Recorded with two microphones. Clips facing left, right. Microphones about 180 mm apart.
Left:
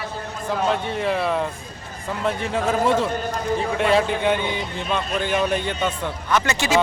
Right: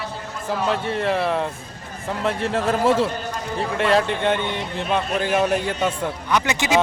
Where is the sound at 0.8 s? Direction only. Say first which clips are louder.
Right 1 dB; centre (ahead or behind).